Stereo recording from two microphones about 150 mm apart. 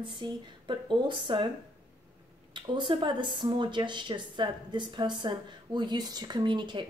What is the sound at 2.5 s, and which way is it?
A woman's voice, 30° right (ahead or behind).